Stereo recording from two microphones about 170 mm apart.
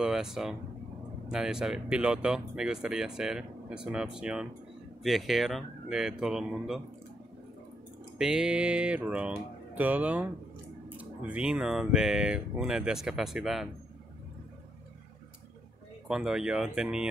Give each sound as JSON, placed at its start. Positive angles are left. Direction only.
{"t": 0.0, "sound": "speech", "side_deg": -5}
{"t": 8.2, "sound": "speech", "side_deg": -5}
{"t": 16.1, "sound": "speech", "side_deg": -5}